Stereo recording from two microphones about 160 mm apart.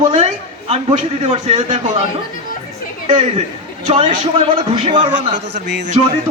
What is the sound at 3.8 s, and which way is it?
A man's voice, 35° right (ahead or behind).